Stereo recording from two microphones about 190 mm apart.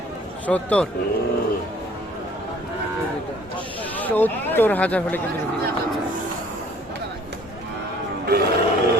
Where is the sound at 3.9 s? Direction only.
10° left (ahead or behind).